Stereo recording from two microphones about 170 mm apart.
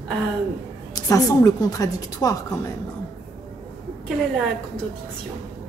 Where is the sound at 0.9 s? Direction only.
20° left (ahead or behind).